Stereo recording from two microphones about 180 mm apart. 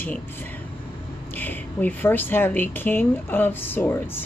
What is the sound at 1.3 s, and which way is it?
A woman's voice, 10° left (ahead or behind).